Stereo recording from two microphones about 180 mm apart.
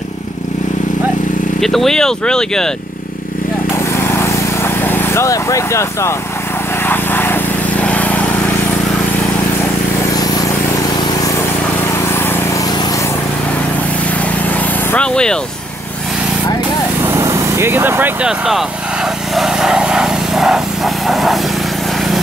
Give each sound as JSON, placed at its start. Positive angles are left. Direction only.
{"t": 1.6, "sound": "speech", "side_deg": 0}
{"t": 3.7, "sound": "lawn mower", "side_deg": 15}
{"t": 6.8, "sound": "vehicle", "side_deg": 10}
{"t": 10.1, "sound": "vehicle", "side_deg": 20}
{"t": 14.5, "sound": "vehicle", "side_deg": 10}
{"t": 17.0, "sound": "speech", "side_deg": -15}
{"t": 19.3, "sound": "vehicle", "side_deg": 0}